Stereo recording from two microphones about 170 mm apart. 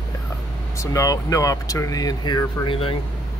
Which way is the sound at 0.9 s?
20° left (ahead or behind).